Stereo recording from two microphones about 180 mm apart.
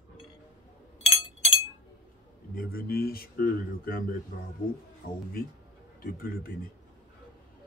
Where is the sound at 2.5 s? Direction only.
55° left (ahead or behind).